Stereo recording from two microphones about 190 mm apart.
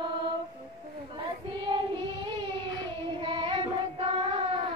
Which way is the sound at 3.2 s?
25° right (ahead or behind).